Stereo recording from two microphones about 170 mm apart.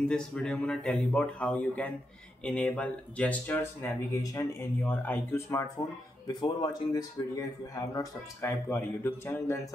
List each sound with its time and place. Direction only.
0.0 s speech: 5° left (ahead or behind)